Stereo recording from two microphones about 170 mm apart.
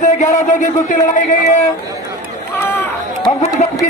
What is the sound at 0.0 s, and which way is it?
Speech, 45° left (ahead or behind).